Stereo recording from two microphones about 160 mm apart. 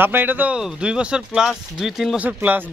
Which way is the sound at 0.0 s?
10° right (ahead or behind).